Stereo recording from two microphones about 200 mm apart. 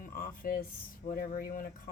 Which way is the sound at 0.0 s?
45° left (ahead or behind).